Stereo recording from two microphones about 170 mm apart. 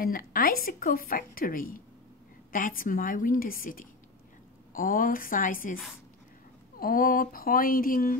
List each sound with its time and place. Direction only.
0.0 s a woman's voice: 55° left (ahead or behind)
6.8 s a woman's voice: 60° left (ahead or behind)